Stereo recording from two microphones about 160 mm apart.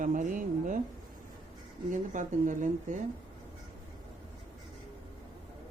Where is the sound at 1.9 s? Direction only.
50° right (ahead or behind).